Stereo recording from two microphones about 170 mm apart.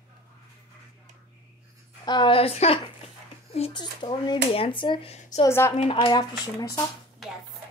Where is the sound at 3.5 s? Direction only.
30° left (ahead or behind).